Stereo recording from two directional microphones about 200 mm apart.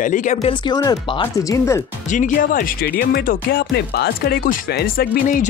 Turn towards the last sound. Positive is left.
turn(degrees=45)  # may be behind; listen again after turning